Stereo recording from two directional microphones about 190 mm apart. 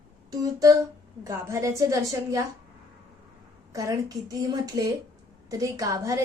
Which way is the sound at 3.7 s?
20° right (ahead or behind).